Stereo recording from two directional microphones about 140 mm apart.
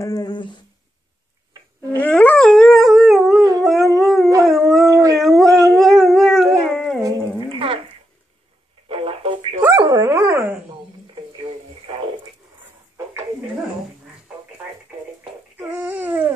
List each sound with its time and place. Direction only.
0.0 s a sound: 25° left (ahead or behind)
2.0 s dog: 10° left (ahead or behind)
3.6 s howl: centre (ahead or behind)
4.8 s howl: 25° right (ahead or behind)
5.1 s howl: centre (ahead or behind)
5.4 s dog: 20° right (ahead or behind)
5.8 s howl: centre (ahead or behind)
6.6 s dog: 5° left (ahead or behind)
7.0 s dog: 25° right (ahead or behind)
7.4 s a sound: 40° right (ahead or behind)
8.8 s radio: 40° right (ahead or behind)
9.6 s dog: 20° right (ahead or behind)
11.3 s a sound: 35° right (ahead or behind)
15.7 s a sound: 15° right (ahead or behind)